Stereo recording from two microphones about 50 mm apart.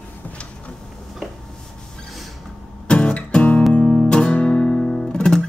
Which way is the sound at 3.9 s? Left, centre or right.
Centre.